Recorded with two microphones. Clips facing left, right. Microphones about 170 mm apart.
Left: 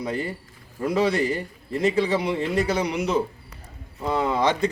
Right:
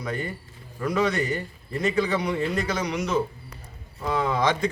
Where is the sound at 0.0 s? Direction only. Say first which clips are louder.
Left 3 dB; 30° left (ahead or behind).